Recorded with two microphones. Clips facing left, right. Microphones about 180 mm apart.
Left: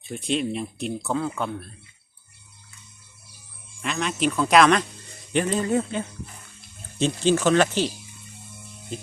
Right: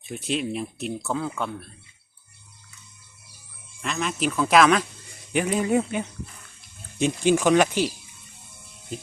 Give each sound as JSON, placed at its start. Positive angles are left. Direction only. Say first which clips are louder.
{"t": 0.1, "sound": "speech", "louder": "left 2 dB", "side_deg": -5}
{"t": 3.8, "sound": "speech", "louder": "left 1 dB", "side_deg": 0}